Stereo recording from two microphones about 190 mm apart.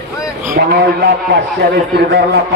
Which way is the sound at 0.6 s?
60° right (ahead or behind).